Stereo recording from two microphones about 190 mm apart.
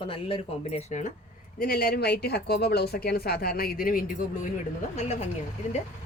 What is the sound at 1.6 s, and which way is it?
Speech, 50° left (ahead or behind).